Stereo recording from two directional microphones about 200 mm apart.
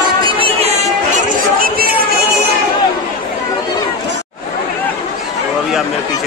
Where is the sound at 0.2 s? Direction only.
25° right (ahead or behind).